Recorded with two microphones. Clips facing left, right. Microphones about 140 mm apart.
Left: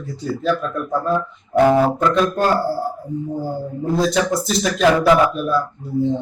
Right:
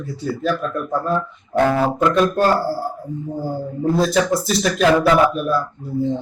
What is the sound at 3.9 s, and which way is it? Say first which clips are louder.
A man's voice: even; centre (ahead or behind).